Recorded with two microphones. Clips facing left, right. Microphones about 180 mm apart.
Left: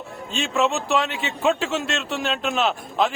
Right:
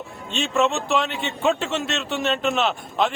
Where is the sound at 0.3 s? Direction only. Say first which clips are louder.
Right 1 dB; centre (ahead or behind).